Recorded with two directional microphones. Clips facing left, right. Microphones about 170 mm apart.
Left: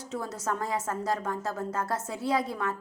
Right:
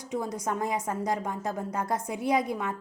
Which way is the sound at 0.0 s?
15° right (ahead or behind).